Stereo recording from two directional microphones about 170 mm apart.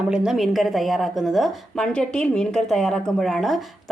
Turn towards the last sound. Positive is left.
turn(degrees=0)  # may be behind; listen again after turning